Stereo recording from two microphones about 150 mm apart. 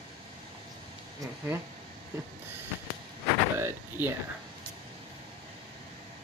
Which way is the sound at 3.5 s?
15° right (ahead or behind).